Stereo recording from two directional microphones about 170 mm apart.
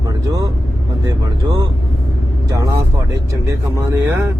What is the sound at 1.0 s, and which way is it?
Speech, 20° right (ahead or behind).